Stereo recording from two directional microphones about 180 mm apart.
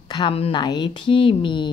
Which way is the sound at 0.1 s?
30° left (ahead or behind).